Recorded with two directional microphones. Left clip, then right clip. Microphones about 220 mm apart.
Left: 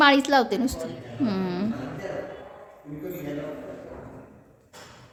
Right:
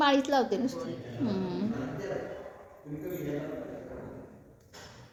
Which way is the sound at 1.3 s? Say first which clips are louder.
Left 4 dB; 25° left (ahead or behind).